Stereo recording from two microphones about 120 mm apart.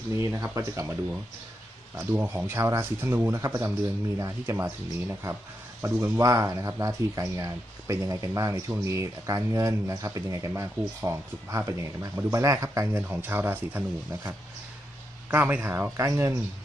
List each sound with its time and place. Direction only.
0.1 s speech: 25° right (ahead or behind)
2.1 s speech: 20° right (ahead or behind)
13.0 s speech: 15° right (ahead or behind)
15.3 s speech: 15° right (ahead or behind)